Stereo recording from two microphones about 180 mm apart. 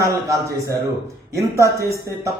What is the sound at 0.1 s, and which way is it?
Speech, 20° right (ahead or behind).